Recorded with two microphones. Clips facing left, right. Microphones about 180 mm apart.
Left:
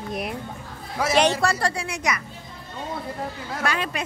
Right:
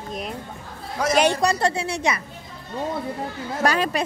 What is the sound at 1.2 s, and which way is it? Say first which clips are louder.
Speech: right 2 dB; 15° right (ahead or behind).